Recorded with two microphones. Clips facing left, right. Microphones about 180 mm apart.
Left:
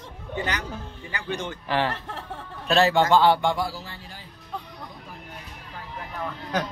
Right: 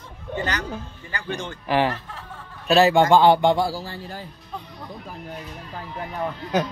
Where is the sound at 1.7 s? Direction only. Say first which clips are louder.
Right 4 dB; 15° right (ahead or behind); by 4.2 s 35° right (ahead or behind).